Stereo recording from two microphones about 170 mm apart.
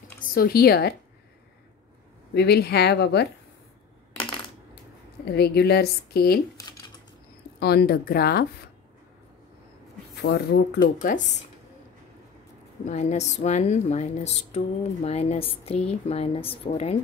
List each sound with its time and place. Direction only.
0.3 s speech: 60° left (ahead or behind)
2.3 s a woman's voice: 75° left (ahead or behind)
5.2 s a woman's voice: 70° left (ahead or behind)
7.6 s speech: 65° left (ahead or behind)
10.2 s a woman's voice: 80° left; by 11.2 s 55° left (ahead or behind)
12.8 s a woman's voice: 40° left (ahead or behind)